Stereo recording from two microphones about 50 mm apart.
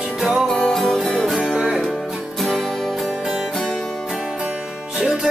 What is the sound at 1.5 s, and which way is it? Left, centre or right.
Music, centre.